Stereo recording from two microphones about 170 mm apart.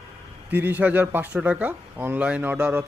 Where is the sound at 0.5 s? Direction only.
10° right (ahead or behind).